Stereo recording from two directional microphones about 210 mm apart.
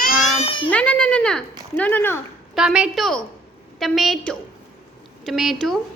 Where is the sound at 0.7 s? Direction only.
5° left (ahead or behind).